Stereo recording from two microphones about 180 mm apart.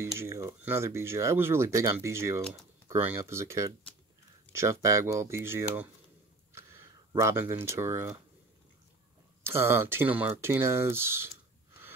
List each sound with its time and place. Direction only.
0.0 s speech: 15° right (ahead or behind)
7.1 s speech: 15° right (ahead or behind)
9.4 s speech: 15° right (ahead or behind)